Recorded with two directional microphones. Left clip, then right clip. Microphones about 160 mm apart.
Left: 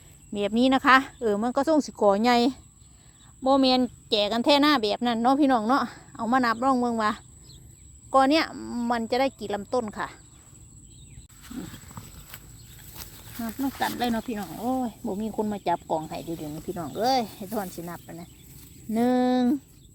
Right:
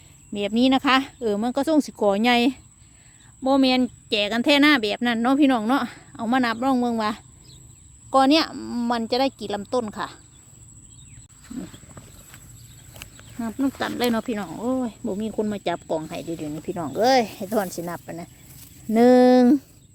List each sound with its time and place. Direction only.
0.3 s a woman's voice: 10° right (ahead or behind)
13.4 s speech: 60° right (ahead or behind)
14.8 s speech: 35° right (ahead or behind); by 19.6 s 70° right (ahead or behind)